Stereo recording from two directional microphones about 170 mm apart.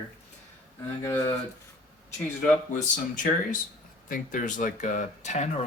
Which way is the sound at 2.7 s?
50° left (ahead or behind).